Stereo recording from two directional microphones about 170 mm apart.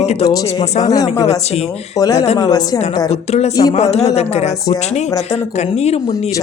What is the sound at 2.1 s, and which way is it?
Speech, 40° left (ahead or behind).